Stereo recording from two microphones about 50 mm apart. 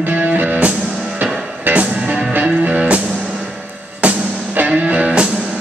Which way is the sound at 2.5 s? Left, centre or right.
Right.